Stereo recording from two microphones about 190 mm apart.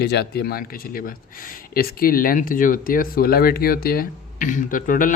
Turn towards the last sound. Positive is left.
turn(degrees=45)  # may be behind; listen again after turning